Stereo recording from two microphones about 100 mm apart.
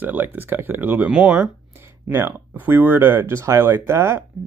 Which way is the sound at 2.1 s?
25° right (ahead or behind).